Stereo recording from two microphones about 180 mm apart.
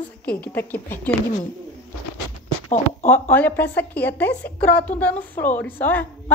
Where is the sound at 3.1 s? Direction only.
10° left (ahead or behind).